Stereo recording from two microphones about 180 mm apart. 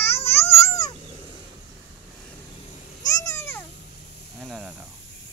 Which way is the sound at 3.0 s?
20° left (ahead or behind).